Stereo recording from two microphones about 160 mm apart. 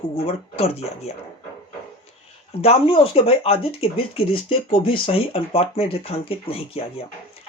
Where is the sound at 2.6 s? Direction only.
35° left (ahead or behind).